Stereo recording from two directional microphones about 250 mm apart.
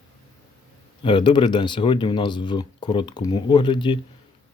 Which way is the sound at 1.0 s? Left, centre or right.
Centre.